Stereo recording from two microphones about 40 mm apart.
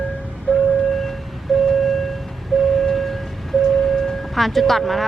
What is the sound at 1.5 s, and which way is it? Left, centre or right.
Vehicle, centre.